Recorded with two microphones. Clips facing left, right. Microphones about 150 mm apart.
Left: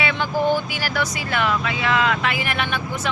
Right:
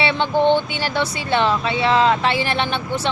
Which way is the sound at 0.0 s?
30° right (ahead or behind).